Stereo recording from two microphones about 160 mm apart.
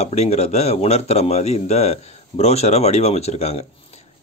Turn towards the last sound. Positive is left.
turn(degrees=40)  # may be behind; listen again after turning